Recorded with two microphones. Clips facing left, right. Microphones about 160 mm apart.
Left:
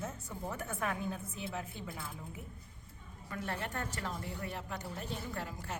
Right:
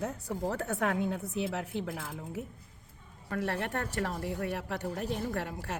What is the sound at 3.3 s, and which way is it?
Speech, 70° right (ahead or behind).